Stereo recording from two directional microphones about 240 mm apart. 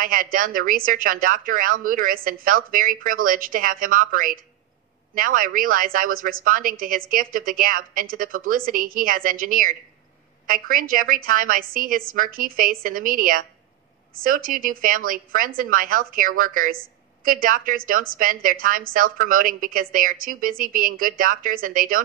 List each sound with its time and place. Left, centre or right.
0.0 s a woman's voice: right